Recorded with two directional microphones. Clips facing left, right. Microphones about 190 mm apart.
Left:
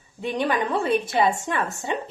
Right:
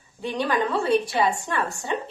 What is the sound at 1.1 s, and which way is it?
Speech, 20° left (ahead or behind).